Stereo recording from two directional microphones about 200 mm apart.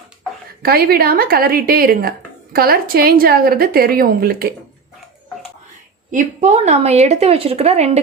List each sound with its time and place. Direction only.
0.6 s a woman's voice: 50° right (ahead or behind)
6.1 s a woman's voice: 40° right (ahead or behind)